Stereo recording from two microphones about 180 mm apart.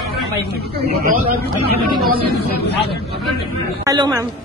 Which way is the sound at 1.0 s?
55° right (ahead or behind).